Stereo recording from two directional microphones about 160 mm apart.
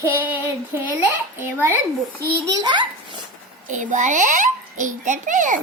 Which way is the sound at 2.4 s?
25° right (ahead or behind).